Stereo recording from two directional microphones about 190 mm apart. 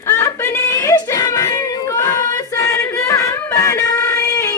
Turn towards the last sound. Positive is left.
turn(degrees=15)  # may be behind; listen again after turning